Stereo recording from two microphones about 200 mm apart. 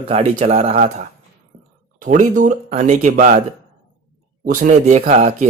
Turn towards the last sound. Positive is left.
turn(degrees=-35)  # may be behind; listen again after turning